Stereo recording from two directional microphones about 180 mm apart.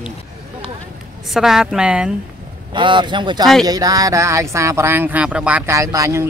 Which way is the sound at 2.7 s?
25° right (ahead or behind).